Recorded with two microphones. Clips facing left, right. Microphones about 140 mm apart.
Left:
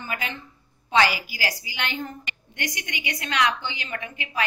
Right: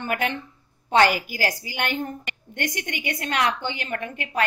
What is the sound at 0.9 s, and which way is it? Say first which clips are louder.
A woman's voice: right 3 dB; 50° right (ahead or behind).